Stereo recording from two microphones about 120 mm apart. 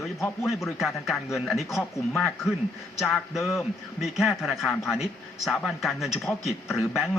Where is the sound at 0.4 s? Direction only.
Centre (ahead or behind).